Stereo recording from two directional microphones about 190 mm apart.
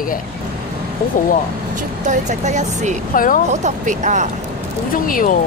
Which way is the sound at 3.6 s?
40° right (ahead or behind).